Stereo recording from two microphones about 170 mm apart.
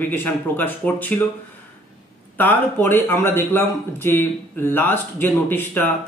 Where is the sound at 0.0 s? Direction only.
10° left (ahead or behind).